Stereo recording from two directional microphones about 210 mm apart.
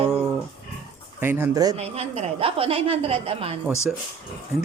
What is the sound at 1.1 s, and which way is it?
Speech, 10° right (ahead or behind).